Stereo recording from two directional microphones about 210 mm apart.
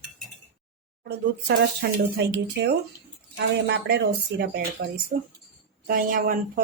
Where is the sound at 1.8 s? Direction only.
50° right (ahead or behind).